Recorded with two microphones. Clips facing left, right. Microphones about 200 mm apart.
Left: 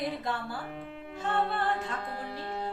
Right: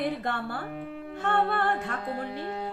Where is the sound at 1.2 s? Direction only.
55° right (ahead or behind).